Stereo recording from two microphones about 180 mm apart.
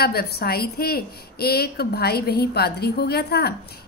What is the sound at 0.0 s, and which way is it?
A woman's voice, 60° left (ahead or behind).